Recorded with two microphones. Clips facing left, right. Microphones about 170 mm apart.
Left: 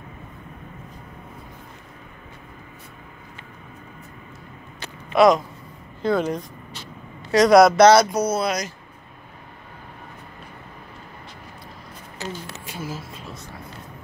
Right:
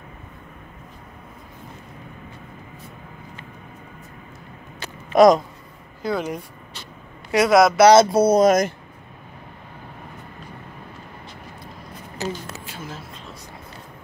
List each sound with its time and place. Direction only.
5.1 s speech: 40° right (ahead or behind)
6.0 s a man's voice: 5° right (ahead or behind)
7.9 s speech: 30° right (ahead or behind); by 8.7 s 50° right (ahead or behind)
12.6 s a sound: 10° left (ahead or behind)